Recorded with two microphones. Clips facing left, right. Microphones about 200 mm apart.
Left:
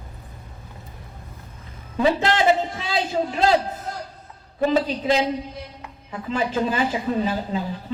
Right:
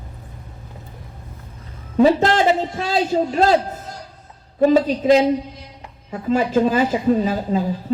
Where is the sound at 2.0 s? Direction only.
40° right (ahead or behind).